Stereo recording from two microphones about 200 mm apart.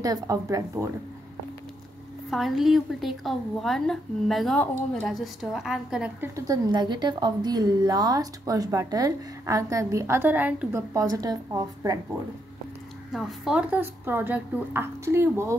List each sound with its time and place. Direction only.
0.0 s a woman's voice: 15° right (ahead or behind)
2.3 s a woman's voice: centre (ahead or behind); by 12.0 s 15° right (ahead or behind)
13.1 s a woman's voice: centre (ahead or behind)